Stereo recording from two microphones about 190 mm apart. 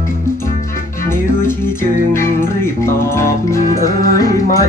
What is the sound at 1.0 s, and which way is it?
Music, 15° left (ahead or behind).